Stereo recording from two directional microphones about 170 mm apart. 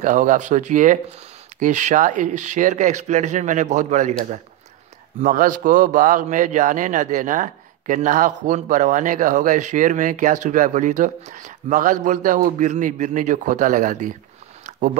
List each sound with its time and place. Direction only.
0.0 s speech: 50° right (ahead or behind)
5.2 s speech: 50° right (ahead or behind)